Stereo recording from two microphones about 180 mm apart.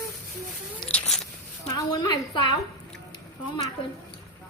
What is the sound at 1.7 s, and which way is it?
Speech, 20° left (ahead or behind).